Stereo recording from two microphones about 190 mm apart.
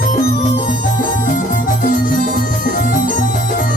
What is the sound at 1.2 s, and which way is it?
Music, 45° left (ahead or behind).